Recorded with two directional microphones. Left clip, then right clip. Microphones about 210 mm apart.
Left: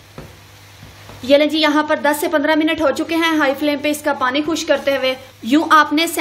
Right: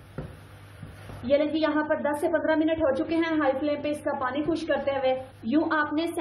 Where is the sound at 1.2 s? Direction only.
55° left (ahead or behind).